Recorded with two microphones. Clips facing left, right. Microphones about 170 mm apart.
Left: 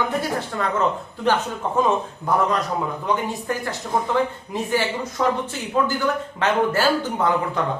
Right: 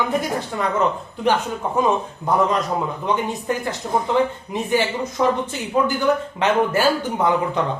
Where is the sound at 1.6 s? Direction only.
10° right (ahead or behind).